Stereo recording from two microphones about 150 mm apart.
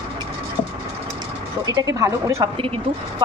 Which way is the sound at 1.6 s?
25° right (ahead or behind).